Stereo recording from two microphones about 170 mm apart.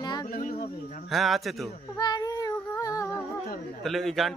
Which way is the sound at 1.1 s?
Centre (ahead or behind).